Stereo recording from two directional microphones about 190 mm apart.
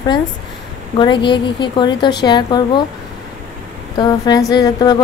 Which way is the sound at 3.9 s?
20° left (ahead or behind).